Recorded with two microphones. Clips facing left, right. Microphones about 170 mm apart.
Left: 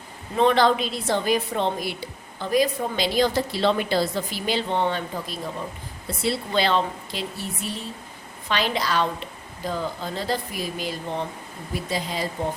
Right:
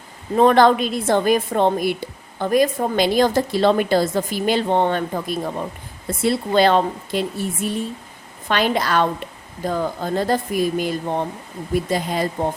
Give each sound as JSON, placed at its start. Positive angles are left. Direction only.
{"t": 0.3, "sound": "a woman's voice", "side_deg": -50}